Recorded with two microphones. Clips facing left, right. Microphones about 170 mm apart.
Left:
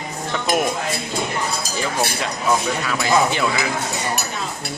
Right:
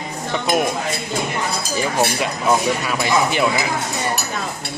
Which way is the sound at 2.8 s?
15° right (ahead or behind).